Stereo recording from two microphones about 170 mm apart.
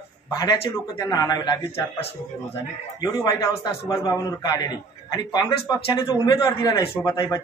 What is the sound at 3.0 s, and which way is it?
Speech, 20° left (ahead or behind).